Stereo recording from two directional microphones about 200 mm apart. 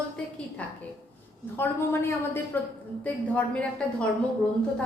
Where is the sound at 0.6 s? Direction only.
5° left (ahead or behind).